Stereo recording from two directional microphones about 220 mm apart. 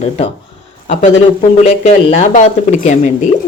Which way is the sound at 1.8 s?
30° left (ahead or behind).